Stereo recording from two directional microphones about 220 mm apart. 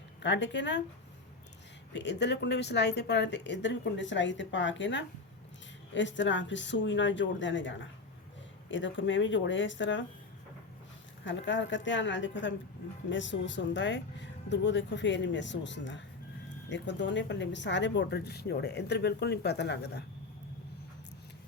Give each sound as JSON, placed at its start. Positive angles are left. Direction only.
{"t": 0.2, "sound": "speech", "side_deg": 55}
{"t": 1.9, "sound": "speech", "side_deg": 50}
{"t": 11.3, "sound": "speech", "side_deg": 55}